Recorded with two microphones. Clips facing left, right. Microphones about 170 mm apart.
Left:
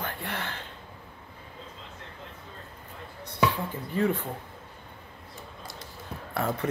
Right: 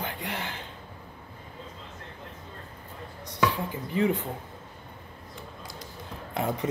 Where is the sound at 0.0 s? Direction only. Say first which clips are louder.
Even; 15° right (ahead or behind).